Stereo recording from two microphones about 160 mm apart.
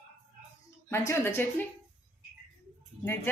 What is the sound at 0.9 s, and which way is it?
Speech, 15° left (ahead or behind).